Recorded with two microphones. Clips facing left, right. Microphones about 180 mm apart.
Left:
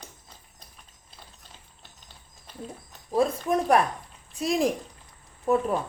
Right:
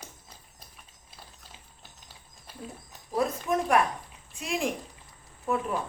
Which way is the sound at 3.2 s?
30° left (ahead or behind).